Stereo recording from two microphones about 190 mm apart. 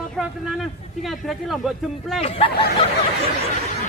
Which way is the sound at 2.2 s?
30° left (ahead or behind).